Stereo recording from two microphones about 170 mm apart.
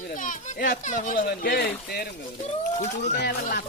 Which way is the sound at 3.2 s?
75° left (ahead or behind).